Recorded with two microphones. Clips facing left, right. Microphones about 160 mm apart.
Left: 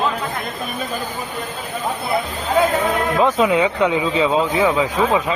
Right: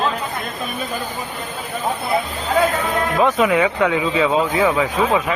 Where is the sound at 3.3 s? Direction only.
20° left (ahead or behind).